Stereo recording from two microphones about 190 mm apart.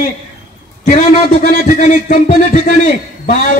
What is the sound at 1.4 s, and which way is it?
A man's voice, 50° left (ahead or behind).